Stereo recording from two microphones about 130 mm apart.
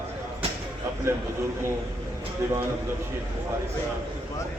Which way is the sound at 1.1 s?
20° right (ahead or behind).